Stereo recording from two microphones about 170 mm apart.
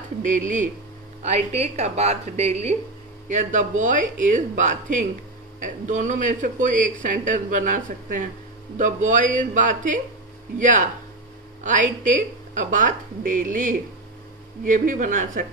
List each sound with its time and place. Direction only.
0.2 s speech: 50° right (ahead or behind)